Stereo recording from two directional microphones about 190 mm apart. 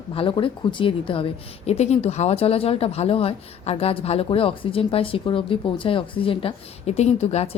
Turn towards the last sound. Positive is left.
turn(degrees=35)  # may be behind; listen again after turning